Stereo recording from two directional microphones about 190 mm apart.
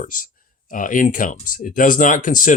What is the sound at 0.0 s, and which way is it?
Speech, 45° left (ahead or behind).